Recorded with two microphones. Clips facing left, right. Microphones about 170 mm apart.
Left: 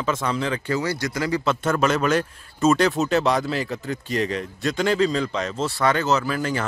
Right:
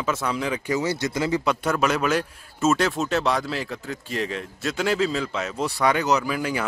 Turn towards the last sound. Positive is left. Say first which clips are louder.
# left 1 dB
turn(degrees=-10)  # may be behind; listen again after turning